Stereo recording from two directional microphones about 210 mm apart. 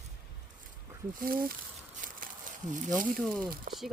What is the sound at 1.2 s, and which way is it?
Speech, 45° right (ahead or behind).